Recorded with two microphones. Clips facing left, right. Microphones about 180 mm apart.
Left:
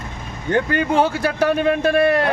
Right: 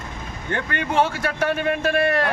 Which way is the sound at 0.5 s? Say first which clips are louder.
Left 5 dB; 35° left (ahead or behind).